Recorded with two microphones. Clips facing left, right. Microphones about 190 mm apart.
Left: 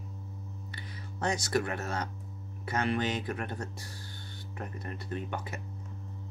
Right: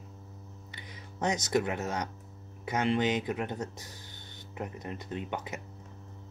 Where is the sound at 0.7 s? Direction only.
15° right (ahead or behind).